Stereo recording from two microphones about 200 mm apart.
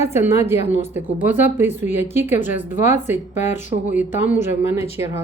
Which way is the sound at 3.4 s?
35° left (ahead or behind).